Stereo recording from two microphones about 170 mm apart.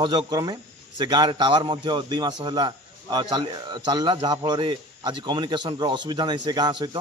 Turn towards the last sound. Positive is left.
turn(degrees=-25)  # may be behind; listen again after turning